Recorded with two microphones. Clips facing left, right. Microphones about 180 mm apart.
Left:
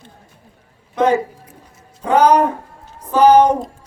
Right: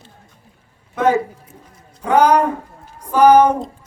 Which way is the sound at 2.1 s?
10° right (ahead or behind).